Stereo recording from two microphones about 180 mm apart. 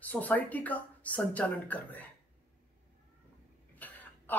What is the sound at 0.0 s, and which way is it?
A child's voice, 10° left (ahead or behind).